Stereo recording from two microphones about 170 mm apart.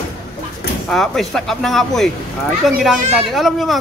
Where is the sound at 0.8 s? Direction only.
Centre (ahead or behind).